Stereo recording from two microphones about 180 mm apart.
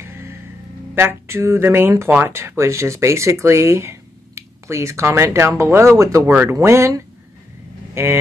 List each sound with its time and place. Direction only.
0.0 s music: 15° right (ahead or behind)
0.9 s speech: 15° right (ahead or behind)